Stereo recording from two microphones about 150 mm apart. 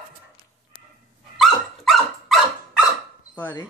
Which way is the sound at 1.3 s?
Centre (ahead or behind).